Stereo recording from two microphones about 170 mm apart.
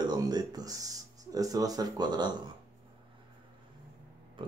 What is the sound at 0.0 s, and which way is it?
Speech, 25° right (ahead or behind).